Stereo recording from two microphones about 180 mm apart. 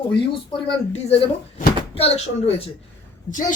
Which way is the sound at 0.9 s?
35° left (ahead or behind).